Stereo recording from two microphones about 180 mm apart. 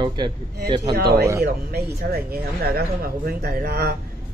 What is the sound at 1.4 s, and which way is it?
Speech, 60° right (ahead or behind).